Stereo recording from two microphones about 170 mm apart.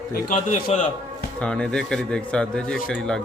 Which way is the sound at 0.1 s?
55° left (ahead or behind).